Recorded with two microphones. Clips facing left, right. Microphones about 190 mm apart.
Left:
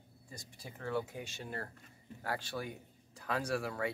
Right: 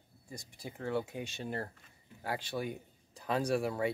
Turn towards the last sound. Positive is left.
turn(degrees=-20)  # may be behind; listen again after turning